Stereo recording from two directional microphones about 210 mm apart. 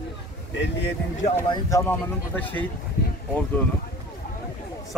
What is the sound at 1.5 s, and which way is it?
Speech, 15° left (ahead or behind).